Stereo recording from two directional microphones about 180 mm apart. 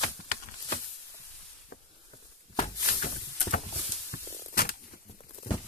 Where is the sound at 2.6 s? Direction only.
45° left (ahead or behind).